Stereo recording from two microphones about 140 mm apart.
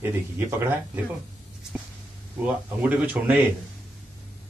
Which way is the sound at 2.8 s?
10° right (ahead or behind).